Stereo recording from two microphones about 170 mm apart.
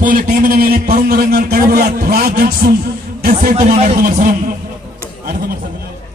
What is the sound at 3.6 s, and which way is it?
Speech, 40° right (ahead or behind).